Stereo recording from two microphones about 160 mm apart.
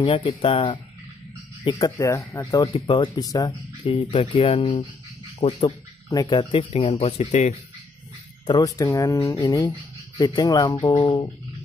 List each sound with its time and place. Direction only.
0.0 s speech: 30° left (ahead or behind)
2.6 s speech: 30° left (ahead or behind)
3.8 s speech: 35° left (ahead or behind)
8.5 s speech: 20° left (ahead or behind)